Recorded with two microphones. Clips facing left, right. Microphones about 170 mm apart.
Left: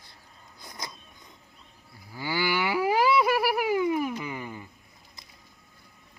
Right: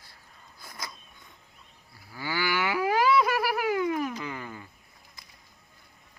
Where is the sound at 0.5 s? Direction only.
20° left (ahead or behind).